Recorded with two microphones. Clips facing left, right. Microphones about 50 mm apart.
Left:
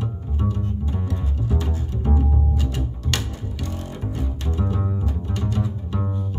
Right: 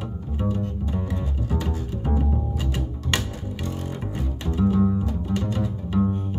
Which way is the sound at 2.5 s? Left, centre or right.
Centre.